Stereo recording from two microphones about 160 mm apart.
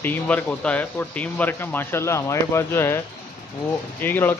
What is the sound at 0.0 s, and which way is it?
Speech, 10° left (ahead or behind).